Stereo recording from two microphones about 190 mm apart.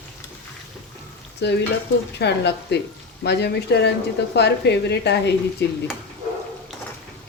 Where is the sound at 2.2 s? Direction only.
60° left (ahead or behind).